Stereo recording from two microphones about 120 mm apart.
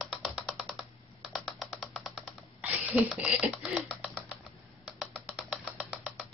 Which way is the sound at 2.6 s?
10° right (ahead or behind).